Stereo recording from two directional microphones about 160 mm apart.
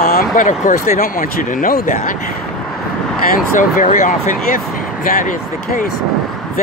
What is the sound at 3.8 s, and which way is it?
Speech, 55° left (ahead or behind).